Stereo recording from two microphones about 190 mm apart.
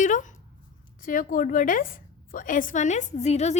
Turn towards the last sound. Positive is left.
turn(degrees=35)  # may be behind; listen again after turning